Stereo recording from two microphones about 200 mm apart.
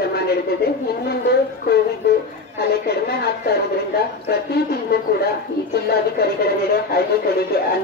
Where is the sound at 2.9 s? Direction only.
50° left (ahead or behind).